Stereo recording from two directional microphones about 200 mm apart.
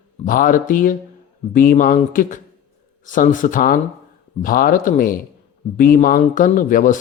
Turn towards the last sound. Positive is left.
turn(degrees=40)  # may be behind; listen again after turning